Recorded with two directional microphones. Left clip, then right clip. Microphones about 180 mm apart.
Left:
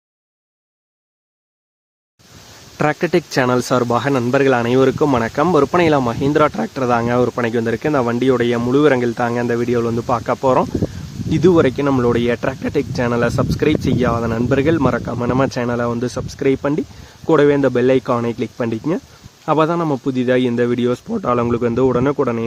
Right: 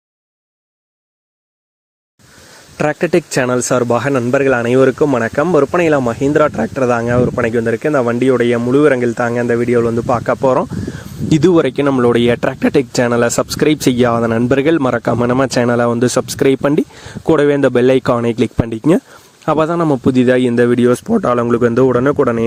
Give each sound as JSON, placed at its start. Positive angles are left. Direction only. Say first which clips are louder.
{"t": 2.7, "sound": "speech", "louder": "right 3 dB", "side_deg": -20}
{"t": 11.3, "sound": "speech", "louder": "right 2 dB", "side_deg": -45}